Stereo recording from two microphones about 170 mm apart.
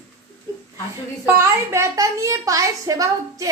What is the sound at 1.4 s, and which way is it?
A woman's voice, 15° right (ahead or behind).